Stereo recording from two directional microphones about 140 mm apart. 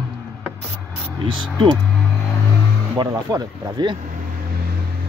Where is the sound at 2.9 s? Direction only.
30° right (ahead or behind).